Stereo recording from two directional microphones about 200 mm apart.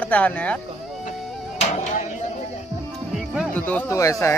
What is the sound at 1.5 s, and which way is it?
Music, 35° left (ahead or behind).